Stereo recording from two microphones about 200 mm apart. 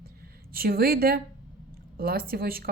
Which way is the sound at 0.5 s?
50° right (ahead or behind).